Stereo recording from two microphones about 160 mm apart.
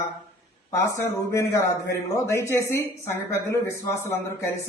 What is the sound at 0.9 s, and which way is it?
A woman's voice, 15° left (ahead or behind).